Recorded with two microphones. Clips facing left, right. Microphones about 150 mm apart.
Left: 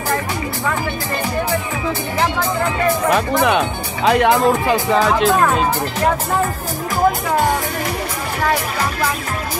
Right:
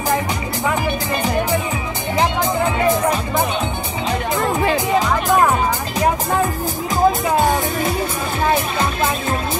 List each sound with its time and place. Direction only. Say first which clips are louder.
2.1 s music: right 3 dB; 20° right (ahead or behind)
3.4 s music: left 5 dB; 90° left
7.1 s speech: right 1 dB; 20° right (ahead or behind)